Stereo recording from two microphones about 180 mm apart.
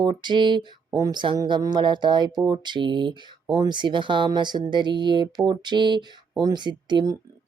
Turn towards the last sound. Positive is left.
turn(degrees=-20)  # may be behind; listen again after turning